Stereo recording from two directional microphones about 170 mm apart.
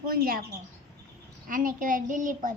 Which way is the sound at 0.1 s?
60° right (ahead or behind).